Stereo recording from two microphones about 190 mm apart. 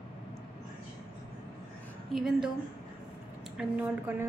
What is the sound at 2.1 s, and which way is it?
Speech, centre (ahead or behind).